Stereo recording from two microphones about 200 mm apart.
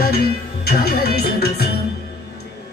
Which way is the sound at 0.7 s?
50° left (ahead or behind).